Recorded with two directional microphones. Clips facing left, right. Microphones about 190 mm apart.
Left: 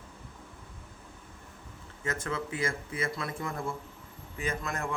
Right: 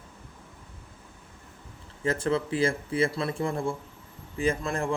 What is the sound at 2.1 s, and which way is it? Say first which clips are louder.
Speech: right 8 dB; 30° right (ahead or behind).